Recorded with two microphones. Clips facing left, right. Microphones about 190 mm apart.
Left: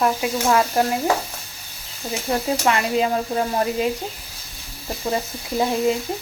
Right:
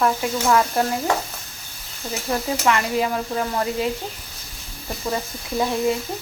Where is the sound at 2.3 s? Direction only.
30° left (ahead or behind).